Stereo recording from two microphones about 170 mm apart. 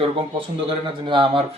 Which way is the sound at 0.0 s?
30° right (ahead or behind).